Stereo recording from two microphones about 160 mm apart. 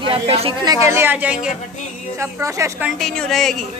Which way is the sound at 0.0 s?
35° right (ahead or behind).